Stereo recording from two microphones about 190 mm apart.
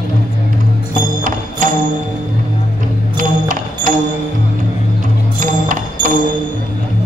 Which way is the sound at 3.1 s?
45° right (ahead or behind).